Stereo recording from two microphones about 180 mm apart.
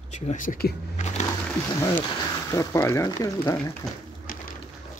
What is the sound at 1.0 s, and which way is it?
Music, 40° left (ahead or behind).